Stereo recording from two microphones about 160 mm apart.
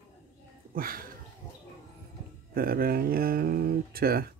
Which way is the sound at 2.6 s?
65° right (ahead or behind).